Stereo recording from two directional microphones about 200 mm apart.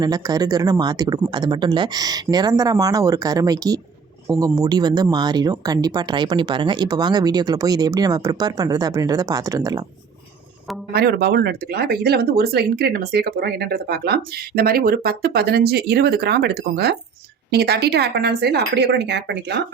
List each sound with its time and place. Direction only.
0.0 s speech: 20° right (ahead or behind)
10.9 s speech: 50° right (ahead or behind)